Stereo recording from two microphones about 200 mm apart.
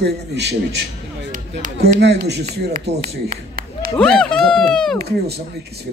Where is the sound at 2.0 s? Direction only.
55° right (ahead or behind).